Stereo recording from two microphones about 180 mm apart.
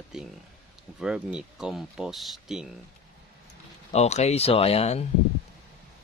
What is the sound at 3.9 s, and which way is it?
Speech, 35° left (ahead or behind).